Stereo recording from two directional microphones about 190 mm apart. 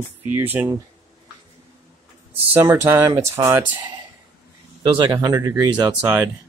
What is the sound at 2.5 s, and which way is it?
Speech, 10° right (ahead or behind).